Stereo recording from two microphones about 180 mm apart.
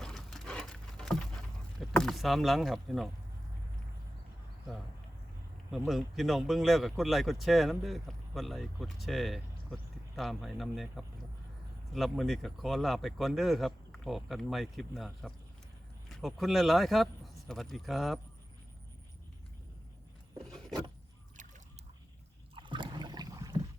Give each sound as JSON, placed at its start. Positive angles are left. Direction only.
{"t": 0.0, "sound": "patter", "side_deg": 5}
{"t": 1.9, "sound": "speech", "side_deg": 0}
{"t": 5.7, "sound": "speech", "side_deg": 0}
{"t": 22.5, "sound": "boat", "side_deg": -25}